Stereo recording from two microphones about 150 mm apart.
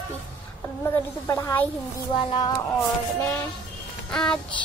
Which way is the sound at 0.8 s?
15° left (ahead or behind).